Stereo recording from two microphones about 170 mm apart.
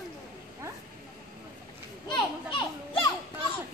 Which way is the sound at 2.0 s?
25° left (ahead or behind).